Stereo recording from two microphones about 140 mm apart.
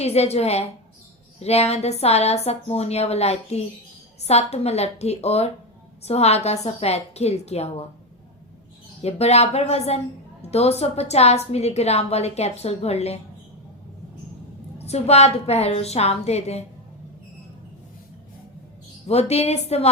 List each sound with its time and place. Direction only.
0.0 s a woman's voice: 50° left (ahead or behind)
9.0 s a woman's voice: 45° left (ahead or behind)
14.8 s a woman's voice: 50° left (ahead or behind)
19.0 s a woman's voice: 50° left (ahead or behind)